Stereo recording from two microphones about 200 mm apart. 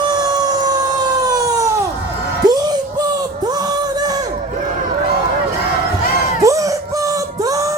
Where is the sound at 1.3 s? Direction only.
20° right (ahead or behind).